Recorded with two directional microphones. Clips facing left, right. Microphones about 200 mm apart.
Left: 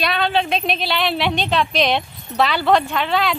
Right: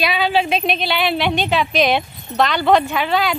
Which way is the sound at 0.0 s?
5° right (ahead or behind).